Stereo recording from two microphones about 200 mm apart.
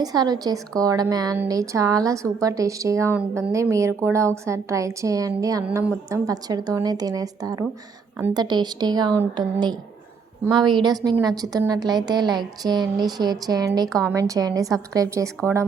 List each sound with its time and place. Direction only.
0.0 s a woman's voice: 20° right (ahead or behind)
5.6 s a woman's voice: 5° right (ahead or behind)